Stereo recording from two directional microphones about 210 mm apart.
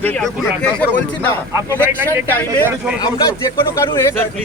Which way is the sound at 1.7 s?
10° right (ahead or behind).